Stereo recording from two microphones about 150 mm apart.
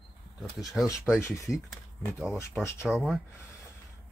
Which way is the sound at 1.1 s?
20° left (ahead or behind).